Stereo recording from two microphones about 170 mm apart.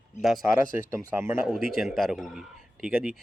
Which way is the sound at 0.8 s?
15° right (ahead or behind).